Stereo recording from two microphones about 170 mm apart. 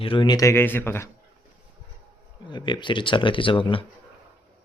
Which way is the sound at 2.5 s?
25° left (ahead or behind).